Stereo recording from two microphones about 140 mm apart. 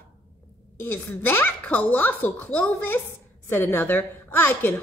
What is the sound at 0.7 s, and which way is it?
A woman's voice, 15° left (ahead or behind).